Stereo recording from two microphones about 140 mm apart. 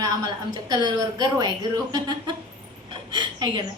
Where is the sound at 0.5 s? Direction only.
30° right (ahead or behind).